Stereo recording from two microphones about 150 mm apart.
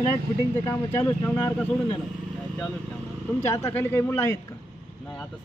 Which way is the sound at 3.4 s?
20° left (ahead or behind).